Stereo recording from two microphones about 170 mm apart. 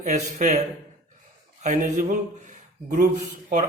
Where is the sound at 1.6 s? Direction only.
45° right (ahead or behind).